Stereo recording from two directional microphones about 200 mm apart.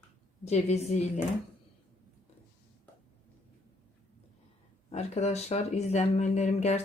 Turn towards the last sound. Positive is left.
turn(degrees=35)  # may be behind; listen again after turning